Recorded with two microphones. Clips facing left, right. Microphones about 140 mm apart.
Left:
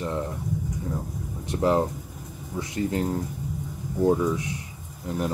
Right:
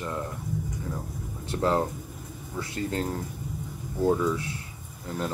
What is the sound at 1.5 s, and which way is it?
Speech, 20° left (ahead or behind).